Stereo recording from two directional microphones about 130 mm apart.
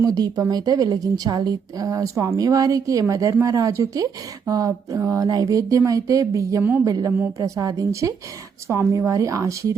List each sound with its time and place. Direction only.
0.0 s a woman's voice: 30° right (ahead or behind)
6.6 s a woman's voice: 15° right (ahead or behind)
6.8 s a woman's voice: 25° right (ahead or behind)